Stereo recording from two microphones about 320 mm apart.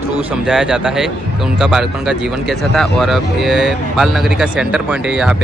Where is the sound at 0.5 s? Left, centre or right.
Centre.